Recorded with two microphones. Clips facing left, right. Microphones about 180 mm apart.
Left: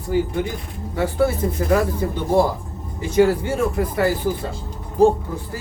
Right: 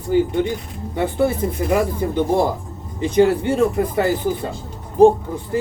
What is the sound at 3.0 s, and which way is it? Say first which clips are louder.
Speech: right 1 dB; 20° right (ahead or behind).